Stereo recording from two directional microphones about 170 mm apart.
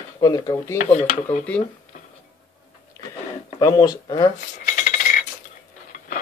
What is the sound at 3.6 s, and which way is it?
Speech, 20° left (ahead or behind).